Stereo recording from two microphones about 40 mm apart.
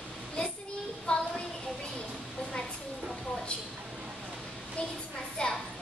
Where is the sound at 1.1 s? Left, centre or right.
Left.